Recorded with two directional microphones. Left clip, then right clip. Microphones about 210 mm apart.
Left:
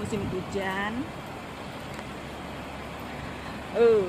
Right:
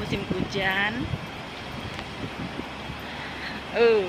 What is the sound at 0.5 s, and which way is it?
Speech, 5° left (ahead or behind).